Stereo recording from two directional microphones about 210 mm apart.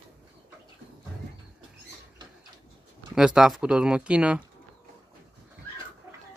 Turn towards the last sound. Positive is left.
turn(degrees=-5)  # may be behind; listen again after turning